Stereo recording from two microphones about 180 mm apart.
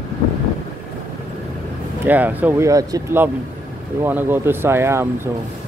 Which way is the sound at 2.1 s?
10° right (ahead or behind).